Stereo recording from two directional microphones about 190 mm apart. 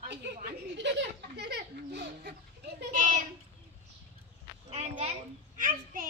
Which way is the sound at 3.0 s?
40° right (ahead or behind).